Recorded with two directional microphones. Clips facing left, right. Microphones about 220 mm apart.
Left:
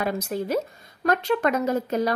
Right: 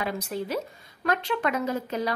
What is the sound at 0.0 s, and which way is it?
A woman's voice, 45° left (ahead or behind).